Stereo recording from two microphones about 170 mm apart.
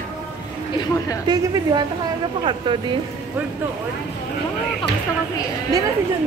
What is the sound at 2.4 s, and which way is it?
Speech, 30° right (ahead or behind).